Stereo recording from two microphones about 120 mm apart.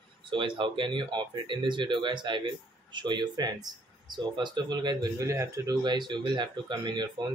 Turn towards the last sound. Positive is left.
turn(degrees=-40)  # may be behind; listen again after turning